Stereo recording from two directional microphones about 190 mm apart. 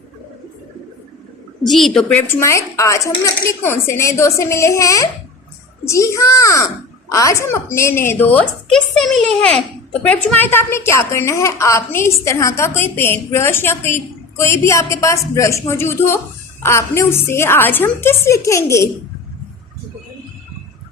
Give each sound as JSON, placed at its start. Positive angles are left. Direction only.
{"t": 1.6, "sound": "a woman's voice", "side_deg": 0}